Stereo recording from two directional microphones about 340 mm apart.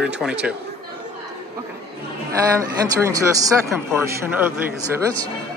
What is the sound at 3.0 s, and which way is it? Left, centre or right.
A man's voice, centre.